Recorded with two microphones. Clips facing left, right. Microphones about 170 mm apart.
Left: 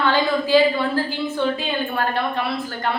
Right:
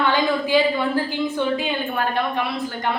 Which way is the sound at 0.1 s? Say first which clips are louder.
Left 2 dB; 15° right (ahead or behind).